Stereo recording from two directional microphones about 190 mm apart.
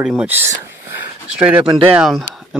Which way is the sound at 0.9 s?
10° right (ahead or behind).